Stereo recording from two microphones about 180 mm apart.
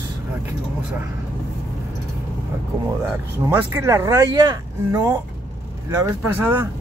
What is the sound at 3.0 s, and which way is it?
Speech, 15° right (ahead or behind).